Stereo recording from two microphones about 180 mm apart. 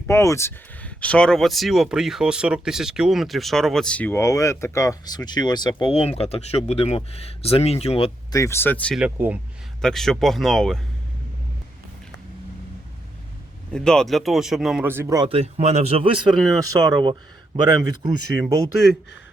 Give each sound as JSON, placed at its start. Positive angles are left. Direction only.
{"t": 0.1, "sound": "speech", "side_deg": 15}
{"t": 8.4, "sound": "speech", "side_deg": 15}
{"t": 9.0, "sound": "speech", "side_deg": -5}
{"t": 13.7, "sound": "speech", "side_deg": 5}
{"t": 14.8, "sound": "speech", "side_deg": -10}
{"t": 15.2, "sound": "speech", "side_deg": -35}